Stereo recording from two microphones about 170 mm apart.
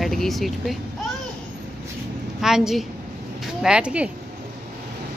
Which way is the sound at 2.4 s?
Centre (ahead or behind).